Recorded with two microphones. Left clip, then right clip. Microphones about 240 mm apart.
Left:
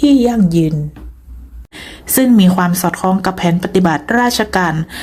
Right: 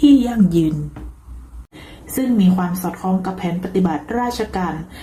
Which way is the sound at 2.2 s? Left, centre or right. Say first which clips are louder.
Left 7 dB; left.